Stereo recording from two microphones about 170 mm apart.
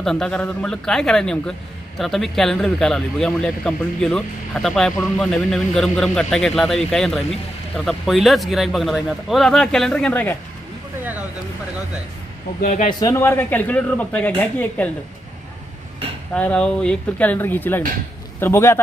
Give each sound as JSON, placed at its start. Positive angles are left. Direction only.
{"t": 0.0, "sound": "speech", "side_deg": 5}
{"t": 12.6, "sound": "speech", "side_deg": 45}
{"t": 13.0, "sound": "speech", "side_deg": 15}
{"t": 16.3, "sound": "speech", "side_deg": 5}